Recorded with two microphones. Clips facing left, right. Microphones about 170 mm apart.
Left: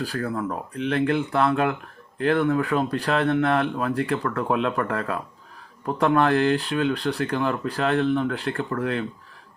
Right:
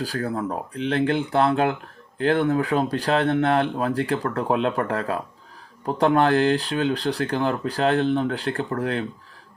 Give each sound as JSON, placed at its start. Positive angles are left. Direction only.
{"t": 0.0, "sound": "speech", "side_deg": -35}